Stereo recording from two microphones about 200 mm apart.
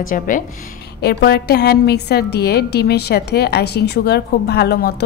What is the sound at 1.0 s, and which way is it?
A woman's voice, 55° left (ahead or behind).